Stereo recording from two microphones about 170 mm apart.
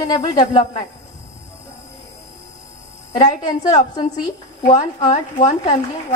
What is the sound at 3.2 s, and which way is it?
A woman's voice, 45° left (ahead or behind).